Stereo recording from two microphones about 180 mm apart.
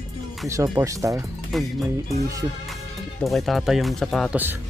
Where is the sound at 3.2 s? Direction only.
Centre (ahead or behind).